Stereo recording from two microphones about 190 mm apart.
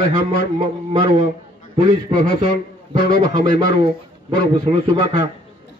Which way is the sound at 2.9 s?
20° right (ahead or behind).